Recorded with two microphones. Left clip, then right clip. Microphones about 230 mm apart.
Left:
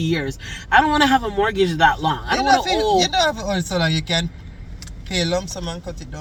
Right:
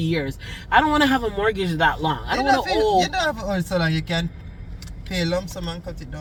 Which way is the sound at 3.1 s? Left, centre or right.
Left.